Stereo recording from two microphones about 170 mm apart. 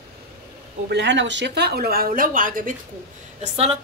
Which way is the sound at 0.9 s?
90° right.